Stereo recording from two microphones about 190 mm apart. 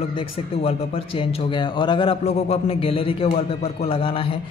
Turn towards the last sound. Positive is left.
turn(degrees=30)  # may be behind; listen again after turning